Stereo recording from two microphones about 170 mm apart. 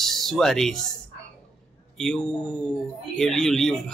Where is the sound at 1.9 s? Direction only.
5° left (ahead or behind).